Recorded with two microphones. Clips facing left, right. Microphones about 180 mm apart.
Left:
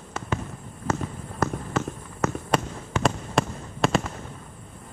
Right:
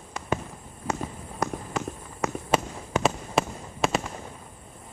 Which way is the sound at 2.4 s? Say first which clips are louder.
Even; 5° right (ahead or behind).